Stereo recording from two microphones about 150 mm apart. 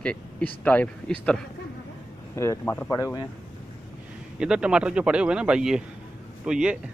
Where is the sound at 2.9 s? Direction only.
25° left (ahead or behind).